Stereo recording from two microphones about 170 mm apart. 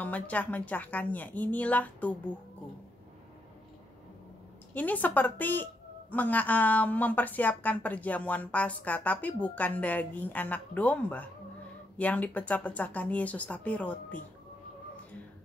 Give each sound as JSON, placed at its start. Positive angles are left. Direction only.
{"t": 0.0, "sound": "a woman's voice", "side_deg": 10}
{"t": 4.7, "sound": "a woman's voice", "side_deg": 10}